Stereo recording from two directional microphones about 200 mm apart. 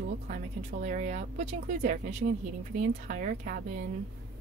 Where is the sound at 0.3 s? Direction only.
40° right (ahead or behind).